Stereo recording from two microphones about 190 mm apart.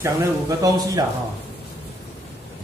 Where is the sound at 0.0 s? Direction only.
15° right (ahead or behind).